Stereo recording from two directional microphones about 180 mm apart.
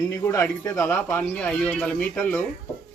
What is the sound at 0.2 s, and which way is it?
Speech, 15° left (ahead or behind).